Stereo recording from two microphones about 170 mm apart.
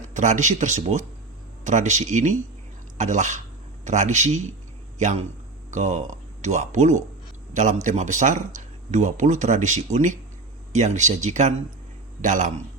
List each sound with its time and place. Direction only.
0.1 s speech: 45° right (ahead or behind)
5.7 s speech: 45° right (ahead or behind)